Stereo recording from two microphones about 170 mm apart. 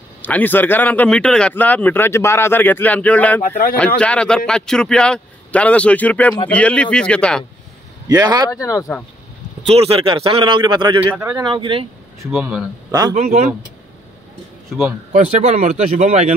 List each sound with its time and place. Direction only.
0.2 s a man's voice: 10° left (ahead or behind)
3.4 s speech: 55° left (ahead or behind)
3.7 s a man's voice: 5° left (ahead or behind)
8.1 s speech: 25° right (ahead or behind)
8.5 s speech: 20° left (ahead or behind)
9.7 s speech: 35° right (ahead or behind)
11.1 s speech: 15° right (ahead or behind)
11.5 s speech: 30° right (ahead or behind)
12.2 s speech: 5° right (ahead or behind)
13.1 s speech: 45° right (ahead or behind)
15.1 s speech: 40° right (ahead or behind)